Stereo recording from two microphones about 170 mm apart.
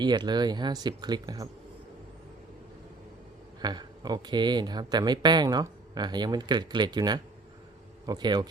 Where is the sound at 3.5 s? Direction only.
25° right (ahead or behind).